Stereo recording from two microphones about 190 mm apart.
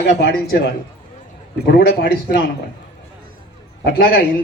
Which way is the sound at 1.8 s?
55° left (ahead or behind).